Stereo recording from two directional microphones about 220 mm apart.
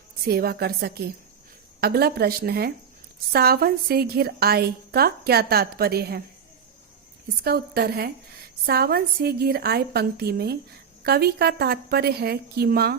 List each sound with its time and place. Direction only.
0.3 s a woman's voice: 45° right (ahead or behind)
7.4 s a woman's voice: 45° right (ahead or behind)